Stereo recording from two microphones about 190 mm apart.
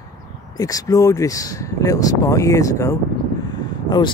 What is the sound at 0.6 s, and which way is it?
Speech, 20° left (ahead or behind).